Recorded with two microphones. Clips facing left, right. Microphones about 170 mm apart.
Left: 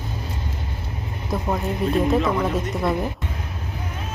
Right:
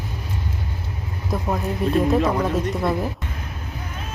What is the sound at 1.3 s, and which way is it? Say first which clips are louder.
A woman's voice: even; centre (ahead or behind).